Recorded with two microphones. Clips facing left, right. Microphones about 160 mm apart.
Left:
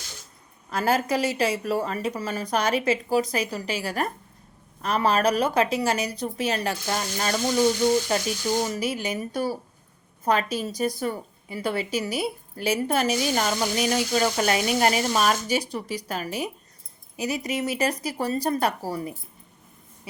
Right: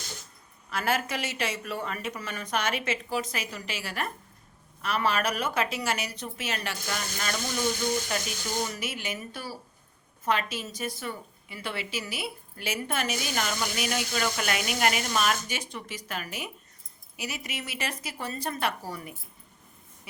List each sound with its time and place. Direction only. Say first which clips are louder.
0.7 s a woman's voice: left 6 dB; 35° left (ahead or behind)